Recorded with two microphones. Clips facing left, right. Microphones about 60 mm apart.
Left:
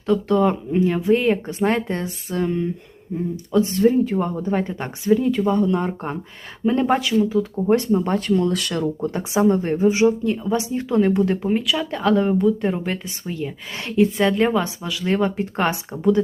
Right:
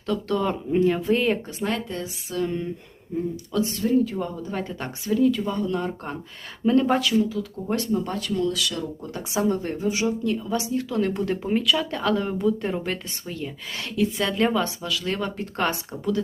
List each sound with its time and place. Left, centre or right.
0.1 s speech: centre
1.5 s speech: left
3.1 s speech: centre
3.6 s speech: left
9.1 s speech: left; by 13.5 s centre
13.8 s speech: left
14.3 s speech: centre